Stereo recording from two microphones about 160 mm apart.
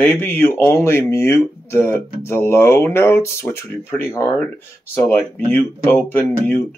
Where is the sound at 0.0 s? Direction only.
15° left (ahead or behind).